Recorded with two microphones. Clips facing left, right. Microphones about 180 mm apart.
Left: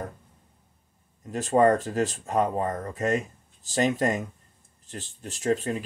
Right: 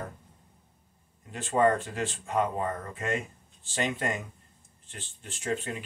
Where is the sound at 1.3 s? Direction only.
40° left (ahead or behind).